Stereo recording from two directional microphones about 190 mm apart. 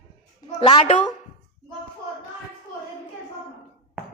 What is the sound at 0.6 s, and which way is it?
Speech, 35° left (ahead or behind).